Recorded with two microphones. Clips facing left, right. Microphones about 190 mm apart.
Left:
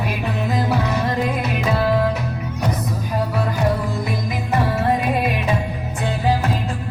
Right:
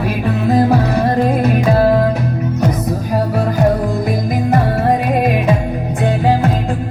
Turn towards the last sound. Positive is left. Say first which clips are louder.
# right 6 dB
turn(degrees=-45)  # may be behind; listen again after turning